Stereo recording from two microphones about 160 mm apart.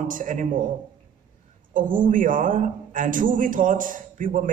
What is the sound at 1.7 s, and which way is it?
A man's voice, 55° right (ahead or behind).